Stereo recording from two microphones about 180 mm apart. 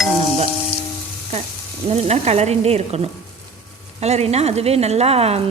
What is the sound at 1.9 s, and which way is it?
A woman's voice, 35° right (ahead or behind).